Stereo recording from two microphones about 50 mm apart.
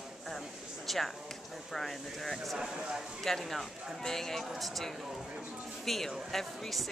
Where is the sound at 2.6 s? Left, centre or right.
Centre.